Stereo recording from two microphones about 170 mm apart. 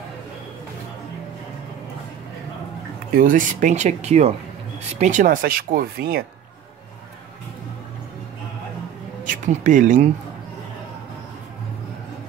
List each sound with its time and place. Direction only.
3.2 s speech: 50° right (ahead or behind)
9.2 s speech: 50° right (ahead or behind)